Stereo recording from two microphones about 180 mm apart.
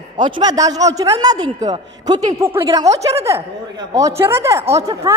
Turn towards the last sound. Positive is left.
turn(degrees=-15)  # may be behind; listen again after turning